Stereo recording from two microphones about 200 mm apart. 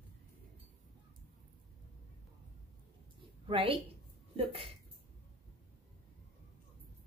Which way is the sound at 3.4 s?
25° right (ahead or behind).